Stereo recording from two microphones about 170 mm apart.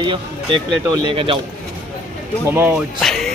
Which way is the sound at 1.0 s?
30° right (ahead or behind).